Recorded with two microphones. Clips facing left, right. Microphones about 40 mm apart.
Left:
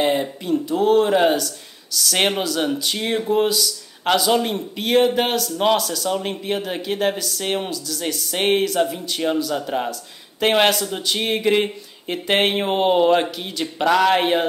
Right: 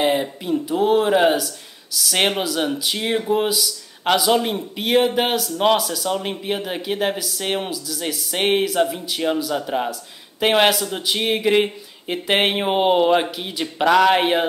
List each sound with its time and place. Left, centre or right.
0.0 s speech: centre